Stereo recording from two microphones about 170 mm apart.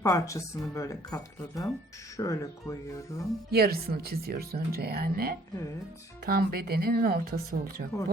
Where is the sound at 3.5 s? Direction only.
65° right (ahead or behind).